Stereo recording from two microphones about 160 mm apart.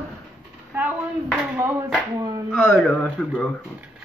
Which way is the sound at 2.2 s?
20° right (ahead or behind).